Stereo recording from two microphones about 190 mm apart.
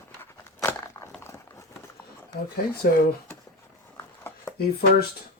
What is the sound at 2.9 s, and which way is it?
Speech, 60° left (ahead or behind).